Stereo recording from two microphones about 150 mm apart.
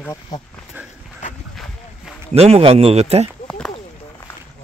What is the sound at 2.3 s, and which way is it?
Speech, 40° right (ahead or behind).